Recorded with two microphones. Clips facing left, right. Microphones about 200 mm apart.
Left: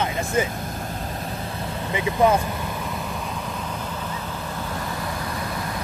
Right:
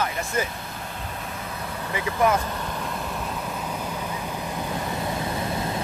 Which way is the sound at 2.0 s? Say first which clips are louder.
Left 3 dB; 20° left (ahead or behind).